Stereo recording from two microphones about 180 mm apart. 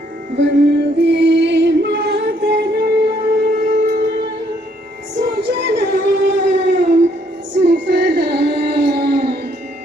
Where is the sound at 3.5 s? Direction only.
45° right (ahead or behind).